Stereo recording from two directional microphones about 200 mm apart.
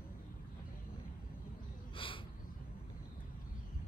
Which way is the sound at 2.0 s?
25° left (ahead or behind).